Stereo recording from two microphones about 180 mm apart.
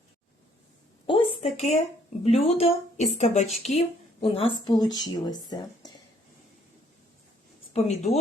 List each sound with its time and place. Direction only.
1.0 s a sound: 30° left (ahead or behind)
2.2 s a woman's voice: 35° left (ahead or behind)
7.7 s a woman's voice: 35° left (ahead or behind)